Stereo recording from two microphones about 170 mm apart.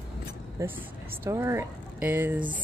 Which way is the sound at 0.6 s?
20° right (ahead or behind).